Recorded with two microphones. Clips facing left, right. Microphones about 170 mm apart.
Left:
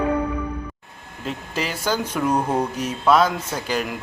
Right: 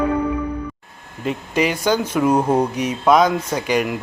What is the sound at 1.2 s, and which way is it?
Speech, 10° right (ahead or behind).